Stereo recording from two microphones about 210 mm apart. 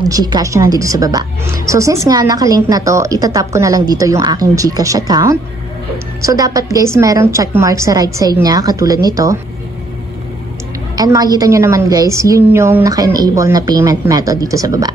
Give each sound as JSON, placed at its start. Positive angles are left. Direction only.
{"t": 0.1, "sound": "a woman's voice", "side_deg": -20}
{"t": 11.0, "sound": "a woman's voice", "side_deg": -20}